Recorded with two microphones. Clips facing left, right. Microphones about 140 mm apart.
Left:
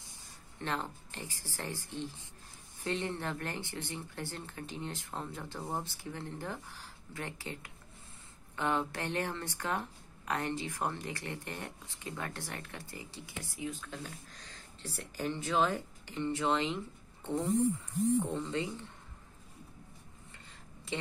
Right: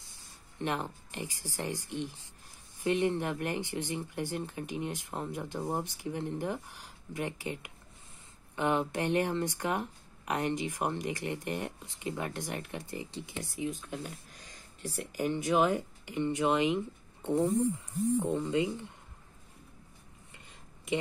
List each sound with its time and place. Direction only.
0.6 s speech: 15° right (ahead or behind)
20.9 s speech: 15° right (ahead or behind)